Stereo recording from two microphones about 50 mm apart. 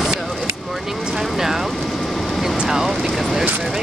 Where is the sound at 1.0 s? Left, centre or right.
Centre.